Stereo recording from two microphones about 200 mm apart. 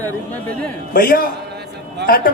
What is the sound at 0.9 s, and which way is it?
A man's voice, 45° left (ahead or behind).